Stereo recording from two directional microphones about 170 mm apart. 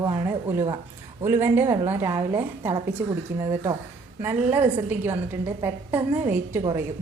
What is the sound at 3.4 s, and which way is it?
A woman's voice, 15° right (ahead or behind).